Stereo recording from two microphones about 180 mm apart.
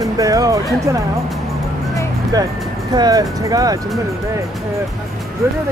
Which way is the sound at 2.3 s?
20° right (ahead or behind).